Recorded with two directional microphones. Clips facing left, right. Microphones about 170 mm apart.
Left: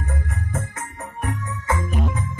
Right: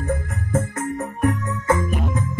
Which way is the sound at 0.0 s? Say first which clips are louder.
Right 5 dB; 45° right (ahead or behind).